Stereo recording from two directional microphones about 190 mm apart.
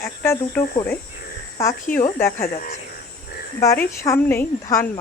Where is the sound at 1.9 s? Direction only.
45° left (ahead or behind).